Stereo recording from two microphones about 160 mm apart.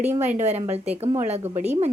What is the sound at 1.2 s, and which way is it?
Speech, 45° right (ahead or behind).